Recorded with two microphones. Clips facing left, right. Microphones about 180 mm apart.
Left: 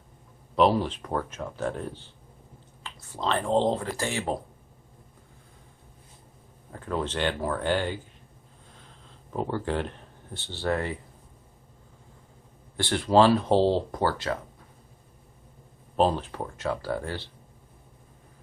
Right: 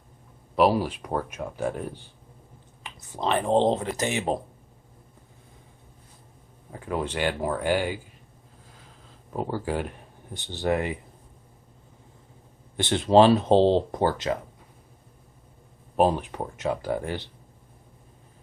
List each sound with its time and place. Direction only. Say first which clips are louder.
0.5 s speech: right 1 dB; 5° right (ahead or behind)
6.7 s speech: right 1 dB; 10° right (ahead or behind)
8.7 s a sound: left 1 dB; 5° right (ahead or behind)
12.7 s speech: right 3 dB; 20° right (ahead or behind)
16.0 s speech: right 2 dB; 15° right (ahead or behind)